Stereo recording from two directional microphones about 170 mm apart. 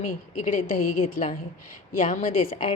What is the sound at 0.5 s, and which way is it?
A woman's voice, 55° left (ahead or behind).